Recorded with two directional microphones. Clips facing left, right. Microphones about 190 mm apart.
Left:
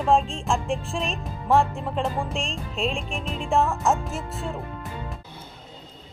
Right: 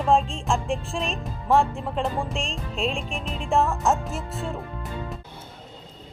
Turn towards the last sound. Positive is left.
turn(degrees=0)  # may be behind; listen again after turning